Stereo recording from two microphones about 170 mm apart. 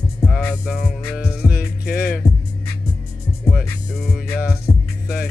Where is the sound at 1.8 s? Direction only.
65° left (ahead or behind).